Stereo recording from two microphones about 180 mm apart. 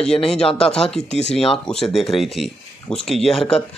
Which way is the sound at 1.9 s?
Centre (ahead or behind).